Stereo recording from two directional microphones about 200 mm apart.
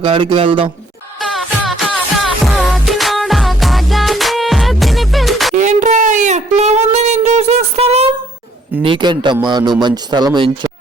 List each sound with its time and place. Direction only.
0.0 s speech: 25° right (ahead or behind)
1.2 s music: centre (ahead or behind)
5.5 s a sound: 35° right (ahead or behind)
8.8 s speech: 25° right (ahead or behind)